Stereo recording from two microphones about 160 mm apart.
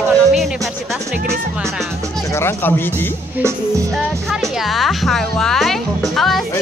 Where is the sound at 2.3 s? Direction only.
15° left (ahead or behind).